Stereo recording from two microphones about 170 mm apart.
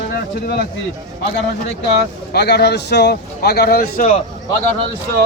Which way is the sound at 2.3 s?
70° left (ahead or behind).